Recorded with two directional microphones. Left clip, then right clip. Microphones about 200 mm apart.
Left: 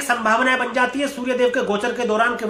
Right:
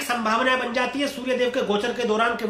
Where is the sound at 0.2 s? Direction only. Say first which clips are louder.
Left 2 dB; 20° left (ahead or behind).